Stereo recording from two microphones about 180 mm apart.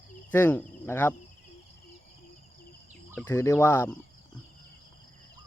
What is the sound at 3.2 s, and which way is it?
Speech, 15° left (ahead or behind).